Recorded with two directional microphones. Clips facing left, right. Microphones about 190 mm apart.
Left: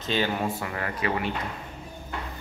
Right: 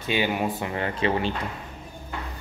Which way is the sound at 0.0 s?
10° right (ahead or behind).